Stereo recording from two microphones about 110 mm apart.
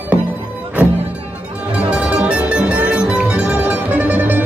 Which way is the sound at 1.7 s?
10° right (ahead or behind).